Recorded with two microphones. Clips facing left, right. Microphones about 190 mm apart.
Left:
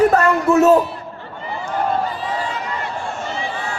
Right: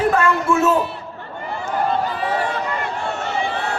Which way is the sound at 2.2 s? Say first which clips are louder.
Right 3 dB; 65° right (ahead or behind).